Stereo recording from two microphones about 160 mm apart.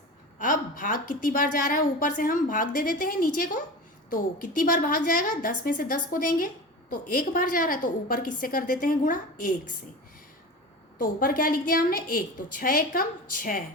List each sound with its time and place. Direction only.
0.3 s a woman's voice: 55° left (ahead or behind)
10.9 s a woman's voice: 60° left (ahead or behind)